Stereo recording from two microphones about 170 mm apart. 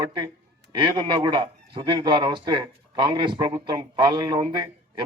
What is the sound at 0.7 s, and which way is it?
Speech, 25° right (ahead or behind).